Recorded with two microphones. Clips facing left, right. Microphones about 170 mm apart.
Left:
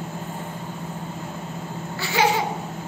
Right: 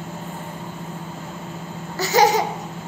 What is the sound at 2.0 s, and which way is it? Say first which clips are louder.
Laughter: right 5 dB; 40° right (ahead or behind).